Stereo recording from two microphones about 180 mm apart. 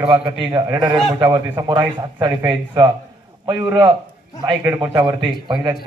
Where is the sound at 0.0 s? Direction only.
25° right (ahead or behind); by 5.6 s 10° right (ahead or behind).